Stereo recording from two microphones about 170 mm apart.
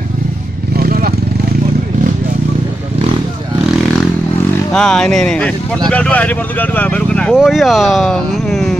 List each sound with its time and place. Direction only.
0.7 s motorcycle: 60° right (ahead or behind)
4.7 s speech: 5° left (ahead or behind)